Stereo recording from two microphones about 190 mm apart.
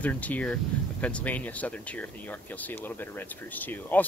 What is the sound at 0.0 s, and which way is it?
Speech, 10° left (ahead or behind).